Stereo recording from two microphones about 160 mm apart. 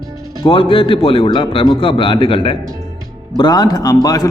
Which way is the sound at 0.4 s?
35° left (ahead or behind).